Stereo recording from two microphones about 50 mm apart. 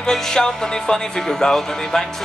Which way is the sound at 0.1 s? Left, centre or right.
Centre.